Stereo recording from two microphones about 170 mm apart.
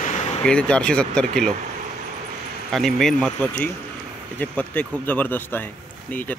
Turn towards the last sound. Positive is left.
turn(degrees=10)  # may be behind; listen again after turning